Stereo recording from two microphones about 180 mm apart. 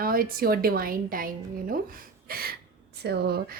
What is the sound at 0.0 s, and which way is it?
A woman's voice, 55° right (ahead or behind).